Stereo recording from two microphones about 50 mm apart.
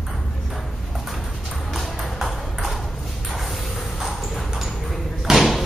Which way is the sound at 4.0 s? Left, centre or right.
Centre.